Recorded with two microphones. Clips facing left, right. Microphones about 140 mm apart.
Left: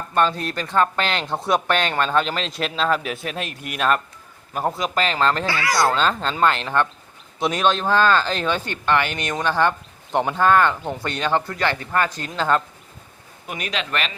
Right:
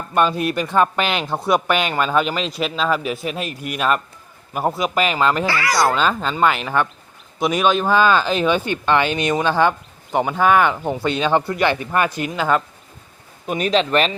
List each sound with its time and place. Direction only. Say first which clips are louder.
0.1 s speech: right 3 dB; 10° right (ahead or behind)
5.5 s speech: right 2 dB; 75° right (ahead or behind)
5.7 s speech: right 1 dB; 10° right (ahead or behind)
13.5 s a man's voice: right 9 dB; 30° right (ahead or behind)